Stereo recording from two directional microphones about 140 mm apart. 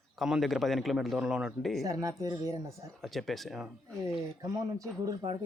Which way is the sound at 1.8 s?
25° right (ahead or behind).